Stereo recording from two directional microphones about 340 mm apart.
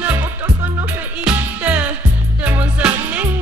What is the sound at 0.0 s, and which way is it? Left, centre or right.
Music, centre.